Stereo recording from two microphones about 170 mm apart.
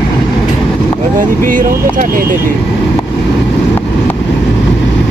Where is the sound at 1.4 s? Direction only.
50° right (ahead or behind).